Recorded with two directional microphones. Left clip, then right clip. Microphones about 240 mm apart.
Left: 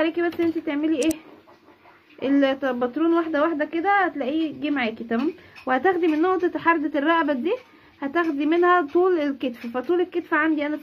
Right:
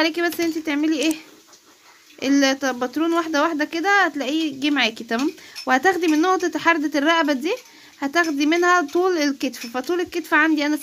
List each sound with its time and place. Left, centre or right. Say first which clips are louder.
0.0 s speech: right 2 dB; right